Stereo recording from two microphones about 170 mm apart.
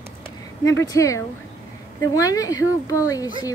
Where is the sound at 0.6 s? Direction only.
20° left (ahead or behind).